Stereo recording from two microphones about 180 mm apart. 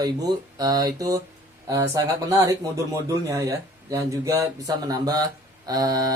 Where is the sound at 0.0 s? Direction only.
20° right (ahead or behind).